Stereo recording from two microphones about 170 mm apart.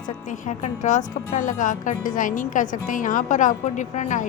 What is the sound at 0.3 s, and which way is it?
A woman's voice, 45° left (ahead or behind).